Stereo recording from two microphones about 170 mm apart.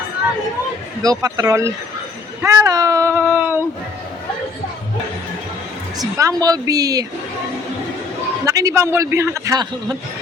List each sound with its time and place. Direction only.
1.0 s a woman's voice: 20° right (ahead or behind)
6.0 s a woman's voice: 20° right (ahead or behind)
8.4 s speech: 20° right (ahead or behind)